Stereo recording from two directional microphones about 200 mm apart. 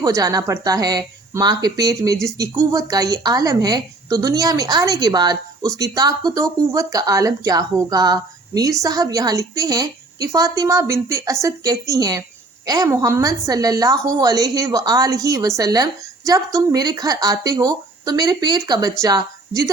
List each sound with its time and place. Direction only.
0.0 s a woman's voice: 15° right (ahead or behind)